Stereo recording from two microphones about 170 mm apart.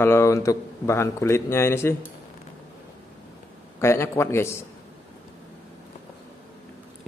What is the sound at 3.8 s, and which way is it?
Speech, 15° left (ahead or behind).